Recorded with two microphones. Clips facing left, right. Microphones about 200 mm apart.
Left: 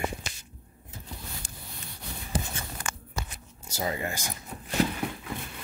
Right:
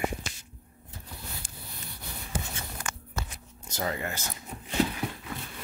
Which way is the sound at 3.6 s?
10° left (ahead or behind).